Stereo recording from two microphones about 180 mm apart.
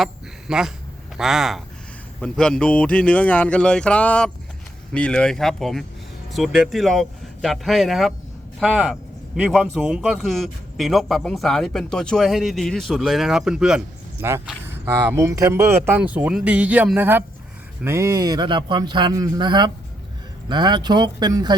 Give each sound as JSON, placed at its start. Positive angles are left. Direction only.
{"t": 0.0, "sound": "speech", "side_deg": -5}